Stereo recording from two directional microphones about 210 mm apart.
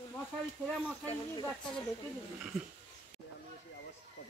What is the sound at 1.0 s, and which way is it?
Speech, 20° left (ahead or behind).